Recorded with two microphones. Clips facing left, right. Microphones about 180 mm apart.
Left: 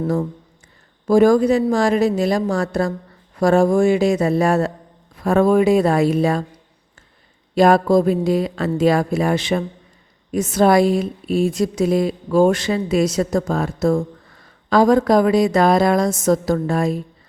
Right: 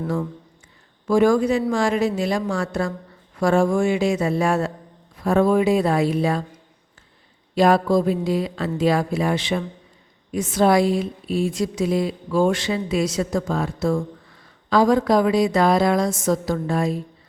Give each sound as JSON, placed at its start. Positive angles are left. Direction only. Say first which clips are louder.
{"t": 1.0, "sound": "a sound", "louder": "left 4 dB", "side_deg": 40}
{"t": 5.2, "sound": "a woman's voice", "louder": "left 3 dB", "side_deg": 55}
{"t": 7.5, "sound": "a woman's voice", "louder": "left 3 dB", "side_deg": 50}